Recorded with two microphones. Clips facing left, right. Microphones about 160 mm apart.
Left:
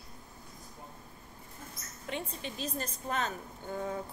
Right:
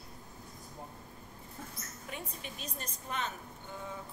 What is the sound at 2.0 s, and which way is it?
A woman's voice, 25° left (ahead or behind).